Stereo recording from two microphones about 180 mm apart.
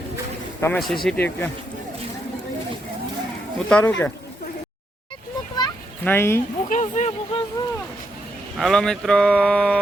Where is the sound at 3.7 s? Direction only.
5° left (ahead or behind).